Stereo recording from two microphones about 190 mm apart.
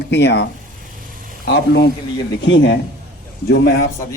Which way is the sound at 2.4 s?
70° left (ahead or behind).